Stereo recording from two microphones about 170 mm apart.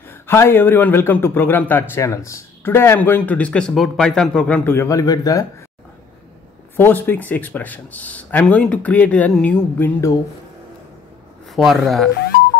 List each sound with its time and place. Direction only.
0.1 s a man's voice: 15° left (ahead or behind)
6.8 s a man's voice: 10° left (ahead or behind)
11.5 s speech: centre (ahead or behind)